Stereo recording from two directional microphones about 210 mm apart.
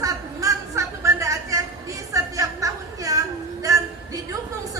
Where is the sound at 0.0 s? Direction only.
15° right (ahead or behind).